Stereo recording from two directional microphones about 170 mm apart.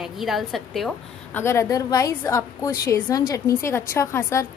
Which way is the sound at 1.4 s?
15° left (ahead or behind).